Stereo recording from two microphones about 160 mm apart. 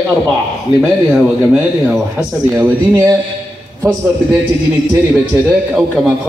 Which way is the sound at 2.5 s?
15° right (ahead or behind).